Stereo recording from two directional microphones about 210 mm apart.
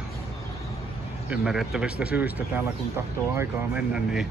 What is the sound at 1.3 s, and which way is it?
A man's voice, 5° right (ahead or behind).